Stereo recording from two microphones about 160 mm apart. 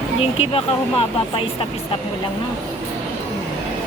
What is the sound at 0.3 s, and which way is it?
Speech, 35° left (ahead or behind).